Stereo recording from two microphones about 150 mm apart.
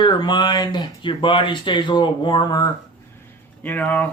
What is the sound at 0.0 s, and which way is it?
Speech, 30° left (ahead or behind).